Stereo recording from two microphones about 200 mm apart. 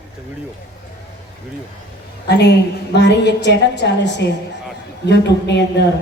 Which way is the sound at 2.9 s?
60° left (ahead or behind).